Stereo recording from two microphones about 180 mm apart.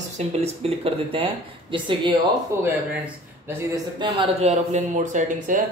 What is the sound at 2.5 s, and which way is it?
A man's voice, 15° right (ahead or behind).